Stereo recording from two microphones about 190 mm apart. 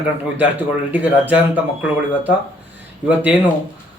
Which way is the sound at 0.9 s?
10° right (ahead or behind).